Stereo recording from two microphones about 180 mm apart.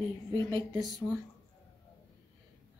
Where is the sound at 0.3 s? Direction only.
20° left (ahead or behind).